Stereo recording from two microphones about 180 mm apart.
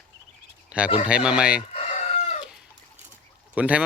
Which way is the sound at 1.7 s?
40° left (ahead or behind).